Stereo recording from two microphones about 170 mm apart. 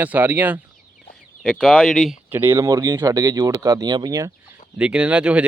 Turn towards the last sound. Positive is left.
turn(degrees=-5)  # may be behind; listen again after turning